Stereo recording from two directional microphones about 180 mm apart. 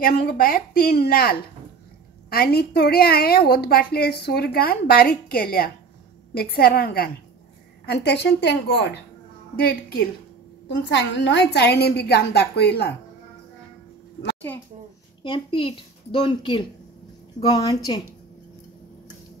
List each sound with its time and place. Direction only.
0.2 s a woman's voice: 55° left (ahead or behind)
10.8 s a woman's voice: 80° left
15.2 s a woman's voice: 30° left (ahead or behind)